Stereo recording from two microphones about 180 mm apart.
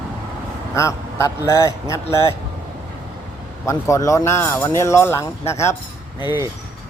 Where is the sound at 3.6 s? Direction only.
15° left (ahead or behind).